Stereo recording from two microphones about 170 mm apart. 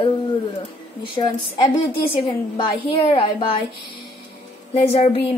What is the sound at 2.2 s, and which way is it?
A woman's voice, 30° left (ahead or behind).